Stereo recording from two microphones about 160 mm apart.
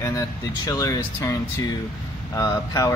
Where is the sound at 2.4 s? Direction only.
20° left (ahead or behind).